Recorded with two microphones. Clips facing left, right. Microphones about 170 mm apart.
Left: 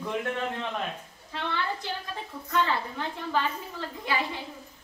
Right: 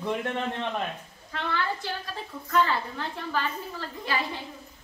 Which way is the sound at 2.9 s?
15° left (ahead or behind).